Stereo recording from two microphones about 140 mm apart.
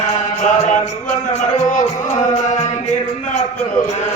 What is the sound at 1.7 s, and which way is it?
Speech, 60° left (ahead or behind).